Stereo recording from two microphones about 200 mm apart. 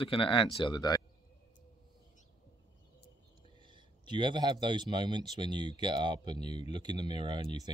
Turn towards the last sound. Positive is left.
turn(degrees=-20)  # may be behind; listen again after turning